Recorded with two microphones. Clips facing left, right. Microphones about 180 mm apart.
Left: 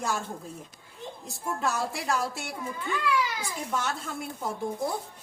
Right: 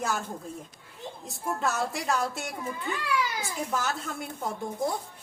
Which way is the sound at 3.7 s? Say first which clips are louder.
Left 1 dB; centre (ahead or behind).